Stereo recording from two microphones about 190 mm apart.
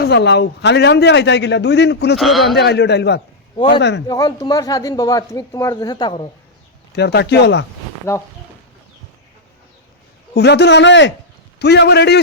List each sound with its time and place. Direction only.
0.0 s a man's voice: 65° left (ahead or behind)
2.1 s speech: centre (ahead or behind)
2.6 s a man's voice: 60° left (ahead or behind)
4.0 s speech: 20° left (ahead or behind)
6.9 s a man's voice: 60° left (ahead or behind)
8.1 s speech: 15° left (ahead or behind)
10.3 s a man's voice: 60° left (ahead or behind)